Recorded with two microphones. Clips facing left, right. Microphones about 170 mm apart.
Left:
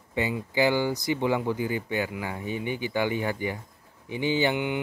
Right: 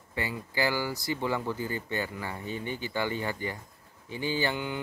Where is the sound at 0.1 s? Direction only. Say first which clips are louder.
Left 6 dB; 20° left (ahead or behind).